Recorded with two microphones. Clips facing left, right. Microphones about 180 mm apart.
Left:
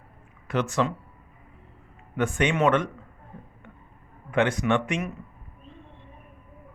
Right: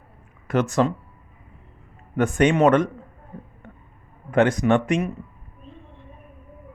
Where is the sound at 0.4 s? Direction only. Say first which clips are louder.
Right 5 dB; 45° right (ahead or behind).